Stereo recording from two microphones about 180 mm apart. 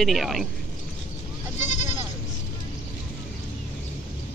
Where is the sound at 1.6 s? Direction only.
40° left (ahead or behind).